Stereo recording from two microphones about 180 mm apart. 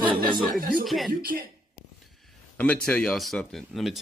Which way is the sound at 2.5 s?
5° left (ahead or behind).